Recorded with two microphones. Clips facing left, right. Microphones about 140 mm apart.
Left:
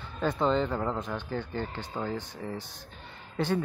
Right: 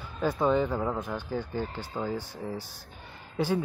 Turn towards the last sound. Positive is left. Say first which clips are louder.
# right 1 dB
turn(degrees=-10)  # may be behind; listen again after turning